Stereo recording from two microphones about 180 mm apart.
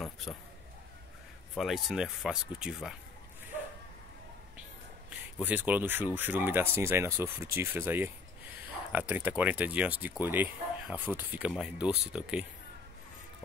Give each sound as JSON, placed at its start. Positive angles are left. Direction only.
{"t": 1.5, "sound": "speech", "side_deg": 0}
{"t": 5.4, "sound": "speech", "side_deg": -10}